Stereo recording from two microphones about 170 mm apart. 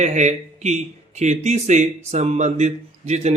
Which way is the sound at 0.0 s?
40° right (ahead or behind).